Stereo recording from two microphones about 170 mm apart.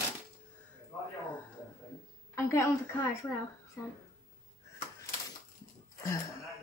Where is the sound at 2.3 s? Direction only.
15° left (ahead or behind).